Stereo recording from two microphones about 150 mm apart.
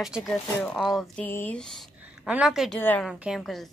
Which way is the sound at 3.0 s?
5° right (ahead or behind).